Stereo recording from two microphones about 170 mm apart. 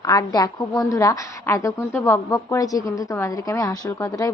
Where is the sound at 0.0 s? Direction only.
20° left (ahead or behind).